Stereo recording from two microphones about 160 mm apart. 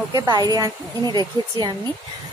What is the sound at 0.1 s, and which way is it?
A woman's voice, 20° right (ahead or behind).